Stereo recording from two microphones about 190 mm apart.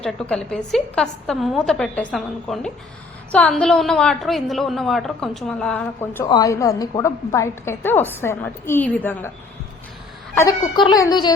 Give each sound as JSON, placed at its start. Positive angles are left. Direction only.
{"t": 0.0, "sound": "a woman's voice", "side_deg": 5}
{"t": 6.2, "sound": "a woman's voice", "side_deg": 20}
{"t": 10.4, "sound": "speech", "side_deg": 20}